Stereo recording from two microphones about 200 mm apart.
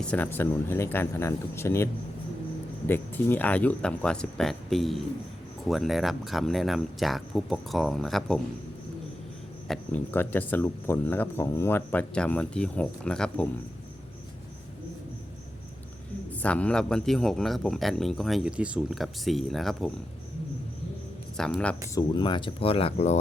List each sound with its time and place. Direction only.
0.0 s a man's voice: 5° left (ahead or behind)
9.6 s speech: 10° left (ahead or behind)
16.4 s a man's voice: 5° left (ahead or behind)
21.3 s a man's voice: 5° left (ahead or behind)
21.9 s speech: 25° left (ahead or behind)